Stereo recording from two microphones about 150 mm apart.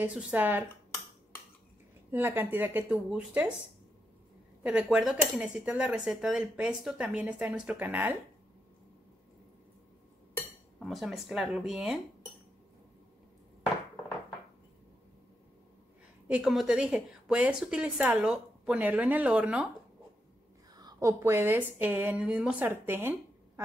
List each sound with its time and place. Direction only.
0.0 s speech: 10° right (ahead or behind)
2.0 s speech: 15° right (ahead or behind)
4.6 s speech: 5° right (ahead or behind)
10.3 s speech: centre (ahead or behind)
16.3 s speech: 5° right (ahead or behind)
20.7 s speech: 25° right (ahead or behind)